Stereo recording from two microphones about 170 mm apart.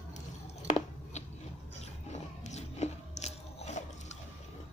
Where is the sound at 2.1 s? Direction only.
40° left (ahead or behind).